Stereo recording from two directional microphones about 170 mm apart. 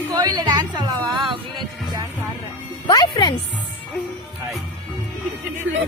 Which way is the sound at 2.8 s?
25° left (ahead or behind).